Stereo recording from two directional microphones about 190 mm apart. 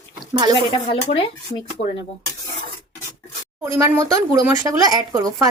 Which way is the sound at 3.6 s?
15° right (ahead or behind).